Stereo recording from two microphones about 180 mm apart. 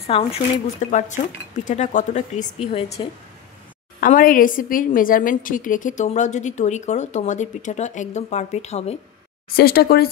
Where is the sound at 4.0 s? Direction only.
50° left (ahead or behind).